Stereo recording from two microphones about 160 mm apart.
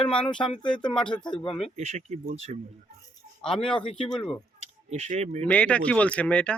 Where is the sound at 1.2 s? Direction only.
30° left (ahead or behind).